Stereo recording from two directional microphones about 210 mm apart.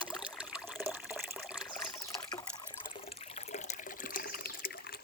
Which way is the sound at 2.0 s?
15° left (ahead or behind).